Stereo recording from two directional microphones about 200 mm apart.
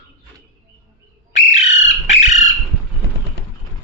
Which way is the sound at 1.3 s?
35° left (ahead or behind).